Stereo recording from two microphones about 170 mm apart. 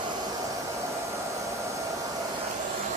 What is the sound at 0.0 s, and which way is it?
Hair dryer, 20° right (ahead or behind).